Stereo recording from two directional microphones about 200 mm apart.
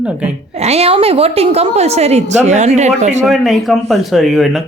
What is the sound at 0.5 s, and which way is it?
A woman's voice, 30° right (ahead or behind).